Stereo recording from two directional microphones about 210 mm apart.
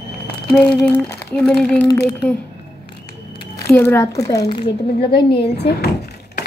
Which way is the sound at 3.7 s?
10° left (ahead or behind).